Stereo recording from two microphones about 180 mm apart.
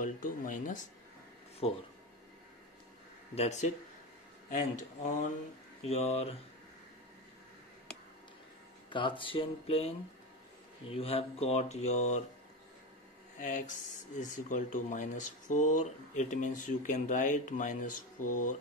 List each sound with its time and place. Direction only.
0.0 s speech: 45° left (ahead or behind)
1.6 s speech: 35° left (ahead or behind)
3.3 s speech: 40° left (ahead or behind)
8.9 s speech: 30° left (ahead or behind)
13.4 s speech: 45° left (ahead or behind)